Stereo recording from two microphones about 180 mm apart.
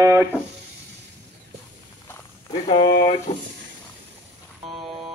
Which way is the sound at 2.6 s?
30° left (ahead or behind).